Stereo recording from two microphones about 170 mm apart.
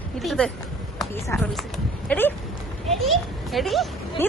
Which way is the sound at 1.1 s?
15° left (ahead or behind).